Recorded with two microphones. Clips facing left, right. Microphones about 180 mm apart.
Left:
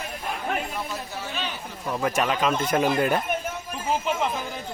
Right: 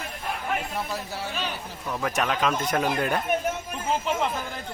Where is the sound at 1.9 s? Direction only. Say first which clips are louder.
Left 2 dB; centre (ahead or behind).